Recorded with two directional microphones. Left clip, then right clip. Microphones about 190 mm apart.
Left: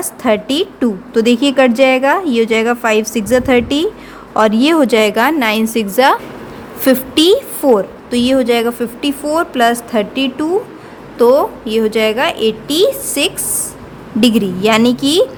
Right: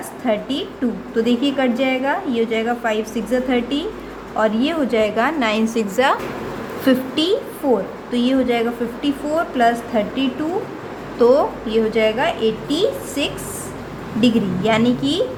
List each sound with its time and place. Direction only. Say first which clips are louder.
0.3 s a woman's voice: left 7 dB; 55° left (ahead or behind)